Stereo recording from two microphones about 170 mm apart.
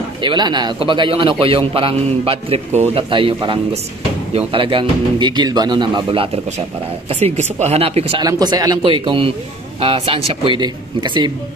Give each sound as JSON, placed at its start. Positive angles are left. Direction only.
{"t": 0.2, "sound": "a man's voice", "side_deg": -25}
{"t": 8.3, "sound": "a man's voice", "side_deg": -20}